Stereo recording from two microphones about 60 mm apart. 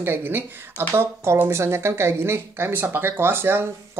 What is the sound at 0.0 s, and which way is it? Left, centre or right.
Speech, right.